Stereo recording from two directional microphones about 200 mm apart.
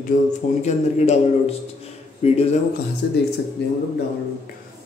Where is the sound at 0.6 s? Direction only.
35° left (ahead or behind).